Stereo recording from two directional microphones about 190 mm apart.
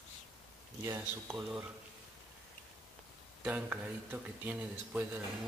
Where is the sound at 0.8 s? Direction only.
15° right (ahead or behind).